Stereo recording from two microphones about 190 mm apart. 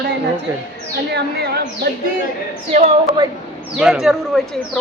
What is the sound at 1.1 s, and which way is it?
Speech, 60° right (ahead or behind).